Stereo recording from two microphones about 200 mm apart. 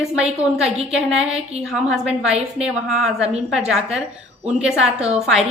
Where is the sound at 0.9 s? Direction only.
5° right (ahead or behind).